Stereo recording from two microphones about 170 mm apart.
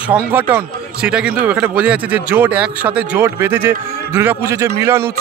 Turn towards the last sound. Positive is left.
turn(degrees=-15)  # may be behind; listen again after turning